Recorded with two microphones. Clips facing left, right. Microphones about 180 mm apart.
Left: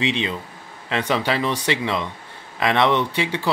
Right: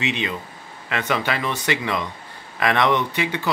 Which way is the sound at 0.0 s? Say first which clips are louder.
Left 2 dB; 30° left (ahead or behind).